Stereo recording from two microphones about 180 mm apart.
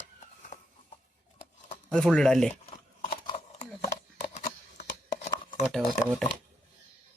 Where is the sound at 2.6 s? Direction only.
35° left (ahead or behind).